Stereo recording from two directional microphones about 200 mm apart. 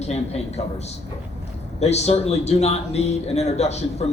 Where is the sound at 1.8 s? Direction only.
30° left (ahead or behind).